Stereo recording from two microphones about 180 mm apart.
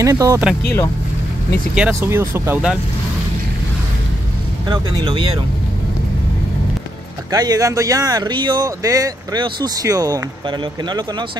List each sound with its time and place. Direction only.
0.0 s speech: 20° right (ahead or behind)
1.8 s speech: 15° right (ahead or behind)
4.6 s speech: 25° right (ahead or behind)
7.2 s speech: 20° right (ahead or behind)